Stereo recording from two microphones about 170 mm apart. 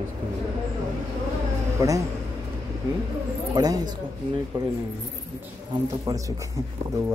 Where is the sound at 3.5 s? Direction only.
25° right (ahead or behind).